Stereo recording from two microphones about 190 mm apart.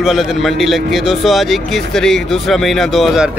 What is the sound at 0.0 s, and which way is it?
Speech, centre (ahead or behind).